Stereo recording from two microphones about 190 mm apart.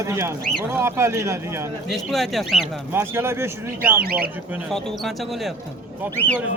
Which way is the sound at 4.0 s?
55° right (ahead or behind).